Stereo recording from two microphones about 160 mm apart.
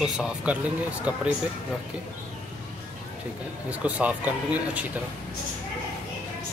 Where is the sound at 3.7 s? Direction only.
10° right (ahead or behind).